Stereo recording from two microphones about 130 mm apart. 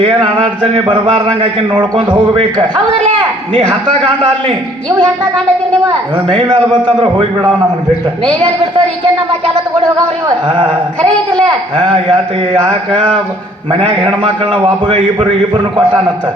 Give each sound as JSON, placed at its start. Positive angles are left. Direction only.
{"t": 0.2, "sound": "a man's voice", "side_deg": -40}
{"t": 5.8, "sound": "a man's voice", "side_deg": -40}
{"t": 10.5, "sound": "a man's voice", "side_deg": -40}
{"t": 13.7, "sound": "a man's voice", "side_deg": -50}